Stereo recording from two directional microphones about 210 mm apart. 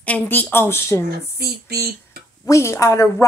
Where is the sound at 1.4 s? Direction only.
50° right (ahead or behind).